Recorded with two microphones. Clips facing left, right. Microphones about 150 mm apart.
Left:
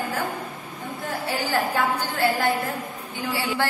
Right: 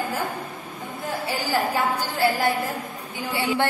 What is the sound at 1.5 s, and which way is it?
A woman's voice, 10° right (ahead or behind).